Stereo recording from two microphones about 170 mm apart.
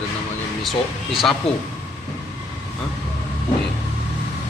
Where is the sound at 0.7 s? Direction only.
Centre (ahead or behind).